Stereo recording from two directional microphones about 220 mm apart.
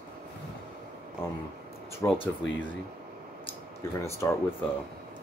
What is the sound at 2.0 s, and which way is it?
Speech, 25° left (ahead or behind).